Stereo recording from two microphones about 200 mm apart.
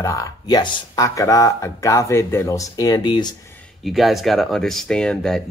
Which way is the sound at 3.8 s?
Centre (ahead or behind).